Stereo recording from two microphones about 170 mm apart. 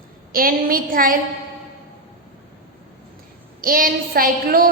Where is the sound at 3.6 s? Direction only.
55° right (ahead or behind).